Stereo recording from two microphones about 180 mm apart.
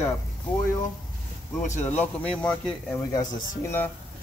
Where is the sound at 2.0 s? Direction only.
5° left (ahead or behind).